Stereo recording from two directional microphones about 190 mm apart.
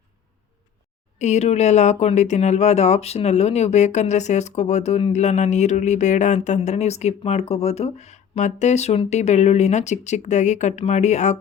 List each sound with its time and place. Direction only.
1.2 s speech: 35° left (ahead or behind)